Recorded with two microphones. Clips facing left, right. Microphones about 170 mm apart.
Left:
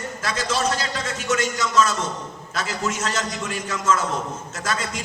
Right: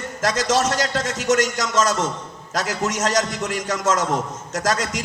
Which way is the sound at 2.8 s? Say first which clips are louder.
Right 5 dB; 40° right (ahead or behind).